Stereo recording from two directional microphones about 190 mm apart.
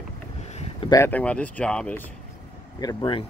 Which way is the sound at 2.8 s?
25° left (ahead or behind).